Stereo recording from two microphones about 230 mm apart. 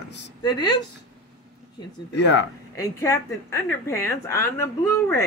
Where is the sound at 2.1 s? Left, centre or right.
Left.